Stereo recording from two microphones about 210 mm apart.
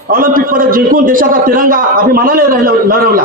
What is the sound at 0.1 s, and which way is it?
A man's voice, 40° right (ahead or behind).